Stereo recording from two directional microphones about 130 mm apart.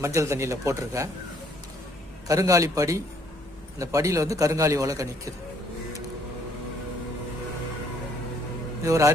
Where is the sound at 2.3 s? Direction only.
25° right (ahead or behind).